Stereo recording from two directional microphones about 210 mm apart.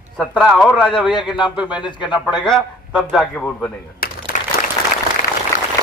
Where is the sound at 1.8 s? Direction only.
20° left (ahead or behind).